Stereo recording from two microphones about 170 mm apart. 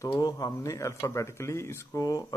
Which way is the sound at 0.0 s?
20° left (ahead or behind).